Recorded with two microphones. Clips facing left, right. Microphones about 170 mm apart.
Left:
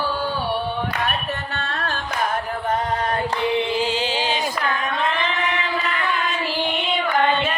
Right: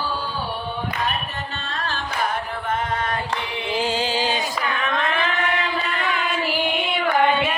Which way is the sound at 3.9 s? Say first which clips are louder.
Even; 35° right (ahead or behind).